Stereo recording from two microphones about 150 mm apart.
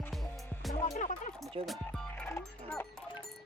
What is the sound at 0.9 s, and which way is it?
Speech, 55° left (ahead or behind).